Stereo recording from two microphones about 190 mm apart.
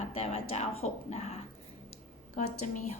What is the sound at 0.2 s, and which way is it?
A woman's voice, 30° left (ahead or behind).